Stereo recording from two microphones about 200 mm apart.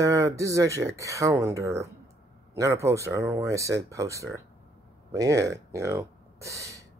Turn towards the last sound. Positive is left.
turn(degrees=-15)  # may be behind; listen again after turning